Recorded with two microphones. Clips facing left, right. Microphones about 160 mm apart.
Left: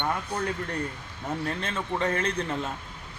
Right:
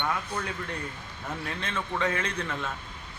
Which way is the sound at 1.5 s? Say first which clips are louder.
Left 3 dB; 35° left (ahead or behind).